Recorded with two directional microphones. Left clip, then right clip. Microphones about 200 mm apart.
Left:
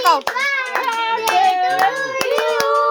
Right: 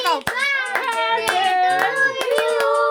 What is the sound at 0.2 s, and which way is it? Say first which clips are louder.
Hands: left 1 dB; 15° right (ahead or behind).